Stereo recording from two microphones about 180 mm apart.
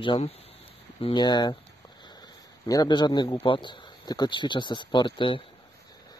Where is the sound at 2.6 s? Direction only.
20° left (ahead or behind).